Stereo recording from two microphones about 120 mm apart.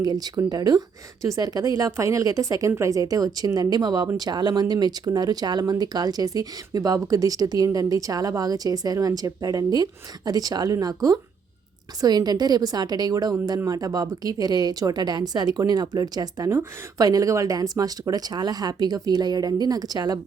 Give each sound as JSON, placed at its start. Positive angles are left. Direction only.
{"t": 0.0, "sound": "a woman's voice", "side_deg": -35}